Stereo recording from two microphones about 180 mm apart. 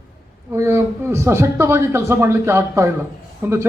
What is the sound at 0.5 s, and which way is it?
Speech, 15° right (ahead or behind).